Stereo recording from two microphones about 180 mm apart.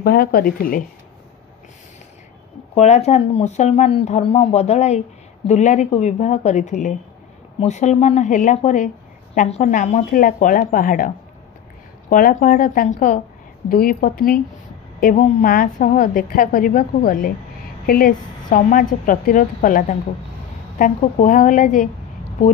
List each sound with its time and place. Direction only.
0.0 s speech: 60° left (ahead or behind)
2.7 s a woman's voice: 40° left (ahead or behind)